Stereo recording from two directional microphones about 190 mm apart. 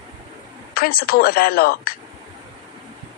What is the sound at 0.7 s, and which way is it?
A woman's voice, 50° left (ahead or behind).